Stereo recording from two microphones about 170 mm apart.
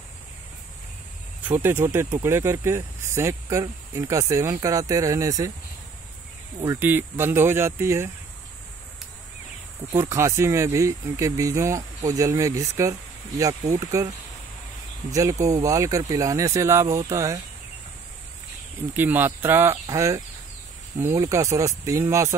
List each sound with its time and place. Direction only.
1.4 s speech: 10° right (ahead or behind)
6.8 s speech: 10° right (ahead or behind)
9.9 s speech: 15° right (ahead or behind)
15.1 s speech: 20° right (ahead or behind)
18.9 s speech: 10° right (ahead or behind)